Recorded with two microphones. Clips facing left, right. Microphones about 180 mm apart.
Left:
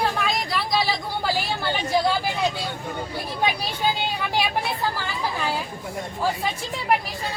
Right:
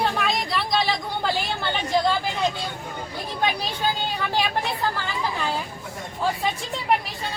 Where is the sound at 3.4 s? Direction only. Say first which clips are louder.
Even; 10° left (ahead or behind).